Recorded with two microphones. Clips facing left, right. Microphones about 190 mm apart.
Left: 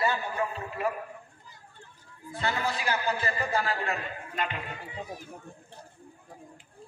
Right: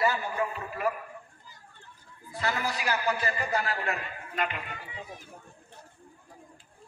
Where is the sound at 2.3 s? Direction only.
30° left (ahead or behind).